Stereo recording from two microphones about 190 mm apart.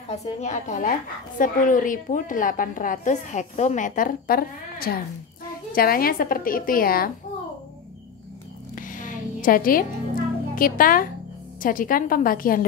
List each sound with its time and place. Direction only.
0.1 s a woman's voice: 35° left (ahead or behind)
8.7 s a sound: 45° left (ahead or behind)
10.5 s a child's voice: 50° left (ahead or behind)